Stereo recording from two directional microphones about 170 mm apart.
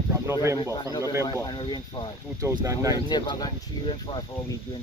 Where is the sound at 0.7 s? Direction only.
25° left (ahead or behind).